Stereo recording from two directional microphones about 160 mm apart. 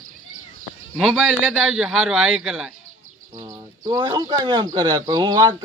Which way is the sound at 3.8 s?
30° right (ahead or behind).